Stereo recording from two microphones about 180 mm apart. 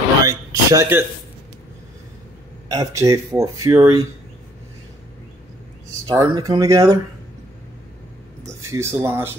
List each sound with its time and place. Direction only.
0.2 s a sound: 20° right (ahead or behind)
2.7 s speech: 20° right (ahead or behind)
6.0 s speech: 20° right (ahead or behind)
8.5 s speech: 15° right (ahead or behind)